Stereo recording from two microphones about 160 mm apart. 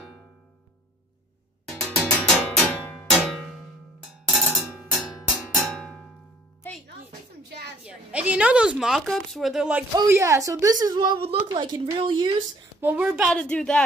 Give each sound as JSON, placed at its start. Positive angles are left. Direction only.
{"t": 1.9, "sound": "music", "side_deg": 10}
{"t": 2.4, "sound": "cowbell", "side_deg": 10}
{"t": 4.4, "sound": "music", "side_deg": -5}
{"t": 7.8, "sound": "a woman's voice", "side_deg": -5}
{"t": 9.9, "sound": "a woman's voice", "side_deg": -15}
{"t": 12.8, "sound": "a woman's voice", "side_deg": -10}
{"t": 13.3, "sound": "speech", "side_deg": 5}